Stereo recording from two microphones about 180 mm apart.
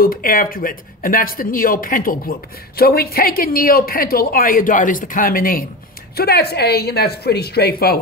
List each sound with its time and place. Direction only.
0.0 s a woman's voice: 50° left (ahead or behind)